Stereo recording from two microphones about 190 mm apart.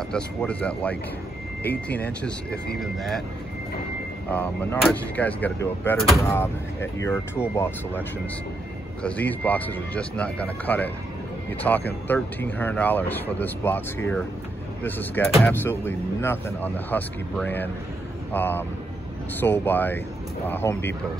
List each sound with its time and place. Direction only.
0.1 s speech: 5° left (ahead or behind)
4.3 s speech: 10° left (ahead or behind)
9.0 s speech: 10° left (ahead or behind)